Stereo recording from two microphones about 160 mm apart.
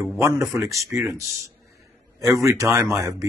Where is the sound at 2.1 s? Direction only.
20° right (ahead or behind).